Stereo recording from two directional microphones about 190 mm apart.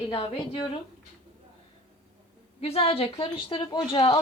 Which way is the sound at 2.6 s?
30° left (ahead or behind).